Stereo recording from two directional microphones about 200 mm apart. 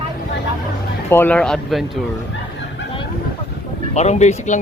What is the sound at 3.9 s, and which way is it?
Speech, 35° left (ahead or behind).